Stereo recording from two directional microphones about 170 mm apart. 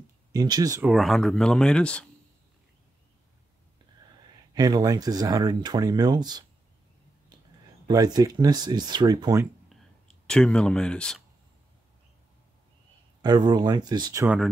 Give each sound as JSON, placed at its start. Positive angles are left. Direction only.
{"t": 0.3, "sound": "speech", "side_deg": -25}
{"t": 0.8, "sound": "speech", "side_deg": 0}
{"t": 4.6, "sound": "speech", "side_deg": -20}
{"t": 7.8, "sound": "speech", "side_deg": -25}
{"t": 9.7, "sound": "a sound", "side_deg": 5}
{"t": 13.2, "sound": "speech", "side_deg": -25}
{"t": 14.2, "sound": "speech", "side_deg": -5}